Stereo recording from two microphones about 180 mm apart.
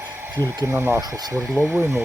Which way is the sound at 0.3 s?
15° right (ahead or behind).